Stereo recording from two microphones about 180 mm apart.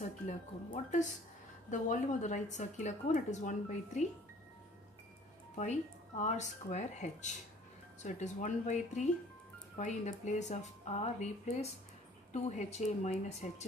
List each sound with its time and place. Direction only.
1.7 s a woman's voice: 45° left (ahead or behind)
5.6 s a woman's voice: 40° left (ahead or behind)